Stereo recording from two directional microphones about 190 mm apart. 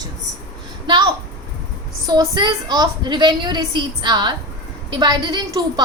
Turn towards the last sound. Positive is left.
turn(degrees=-20)  # may be behind; listen again after turning